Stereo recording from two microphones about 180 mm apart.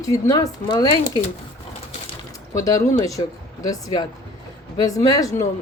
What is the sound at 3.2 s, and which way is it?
Speech, 30° left (ahead or behind).